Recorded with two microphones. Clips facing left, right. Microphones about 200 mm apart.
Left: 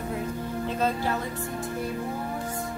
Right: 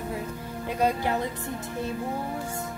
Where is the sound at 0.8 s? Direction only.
15° right (ahead or behind).